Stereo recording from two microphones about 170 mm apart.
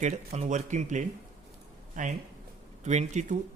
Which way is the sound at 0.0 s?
40° right (ahead or behind).